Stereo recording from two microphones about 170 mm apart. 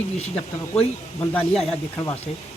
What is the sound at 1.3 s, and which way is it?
Speech, centre (ahead or behind).